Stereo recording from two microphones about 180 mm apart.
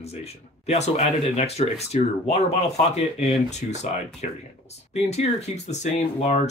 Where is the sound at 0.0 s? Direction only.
35° left (ahead or behind).